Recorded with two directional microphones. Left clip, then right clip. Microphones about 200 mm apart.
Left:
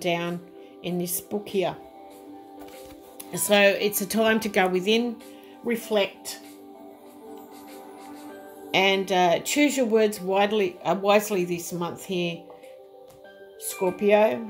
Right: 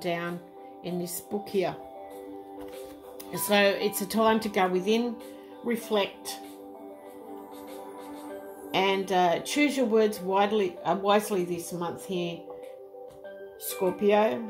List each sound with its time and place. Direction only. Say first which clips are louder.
0.0 s speech: left 4 dB; 25° left (ahead or behind)
1.3 s speech: left 2 dB; 20° left (ahead or behind)
3.3 s speech: left 4 dB; 15° left (ahead or behind)
8.7 s speech: left 4 dB; 20° left (ahead or behind)
13.7 s speech: left 3 dB; 15° left (ahead or behind)